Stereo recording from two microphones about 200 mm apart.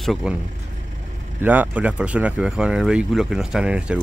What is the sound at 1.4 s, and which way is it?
Speech, 10° right (ahead or behind).